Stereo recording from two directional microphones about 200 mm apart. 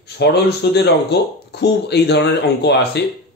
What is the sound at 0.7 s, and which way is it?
Speech, 55° left (ahead or behind).